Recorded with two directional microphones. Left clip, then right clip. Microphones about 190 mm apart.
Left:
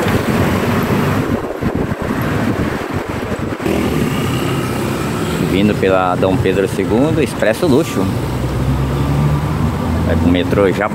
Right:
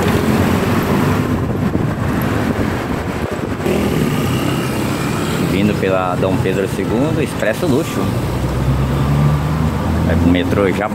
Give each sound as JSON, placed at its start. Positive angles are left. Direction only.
{"t": 5.6, "sound": "speech", "side_deg": 20}
{"t": 10.3, "sound": "speech", "side_deg": 15}